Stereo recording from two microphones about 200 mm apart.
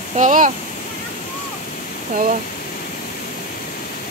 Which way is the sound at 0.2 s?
40° right (ahead or behind).